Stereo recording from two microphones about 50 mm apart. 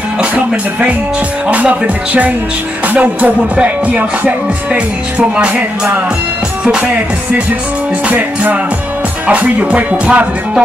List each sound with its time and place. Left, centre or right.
1.5 s music: right
5.3 s music: right
9.3 s music: right